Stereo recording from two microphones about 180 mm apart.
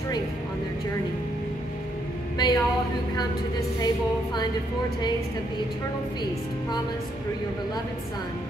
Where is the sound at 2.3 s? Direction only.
25° left (ahead or behind).